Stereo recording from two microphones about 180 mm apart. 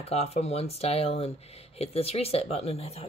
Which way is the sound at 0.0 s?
35° left (ahead or behind).